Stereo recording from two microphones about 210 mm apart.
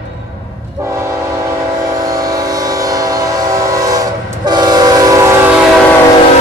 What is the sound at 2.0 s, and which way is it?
Train, 15° right (ahead or behind).